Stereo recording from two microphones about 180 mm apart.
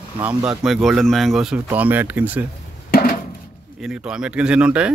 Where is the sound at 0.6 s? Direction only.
Centre (ahead or behind).